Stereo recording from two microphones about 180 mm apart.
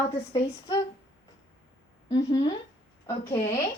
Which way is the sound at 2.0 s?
20° left (ahead or behind).